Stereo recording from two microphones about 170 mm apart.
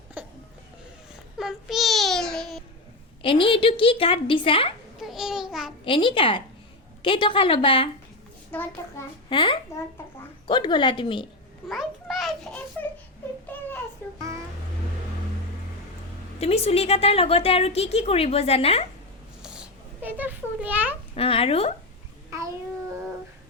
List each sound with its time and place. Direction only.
0.2 s cough: 10° right (ahead or behind)
1.4 s a sound: centre (ahead or behind)
3.2 s a woman's voice: 30° left (ahead or behind)
4.9 s babbling: centre (ahead or behind)
5.8 s a woman's voice: 30° left (ahead or behind)
8.5 s a child's voice: 10° left (ahead or behind)
9.3 s a woman's voice: 30° left (ahead or behind)
11.7 s a sound: centre (ahead or behind)
16.4 s a woman's voice: 35° left (ahead or behind)
19.4 s a sound: 5° right (ahead or behind)
21.2 s a woman's voice: 35° left (ahead or behind)
22.3 s a child's voice: 20° right (ahead or behind)